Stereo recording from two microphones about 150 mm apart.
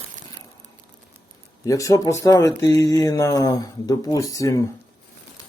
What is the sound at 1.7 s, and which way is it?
Speech, 20° left (ahead or behind).